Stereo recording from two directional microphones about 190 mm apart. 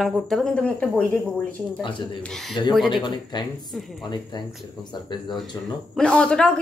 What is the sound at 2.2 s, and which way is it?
Speech, centre (ahead or behind).